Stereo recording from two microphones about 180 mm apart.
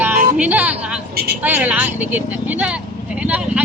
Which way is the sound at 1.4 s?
10° right (ahead or behind).